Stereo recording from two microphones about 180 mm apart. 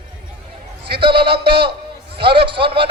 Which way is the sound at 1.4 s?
60° right (ahead or behind).